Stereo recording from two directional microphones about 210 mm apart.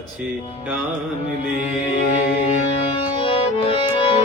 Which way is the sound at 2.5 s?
25° left (ahead or behind).